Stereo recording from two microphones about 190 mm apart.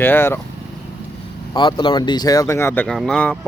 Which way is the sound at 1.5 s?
25° left (ahead or behind).